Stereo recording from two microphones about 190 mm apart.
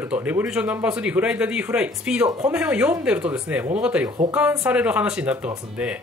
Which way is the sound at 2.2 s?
20° right (ahead or behind).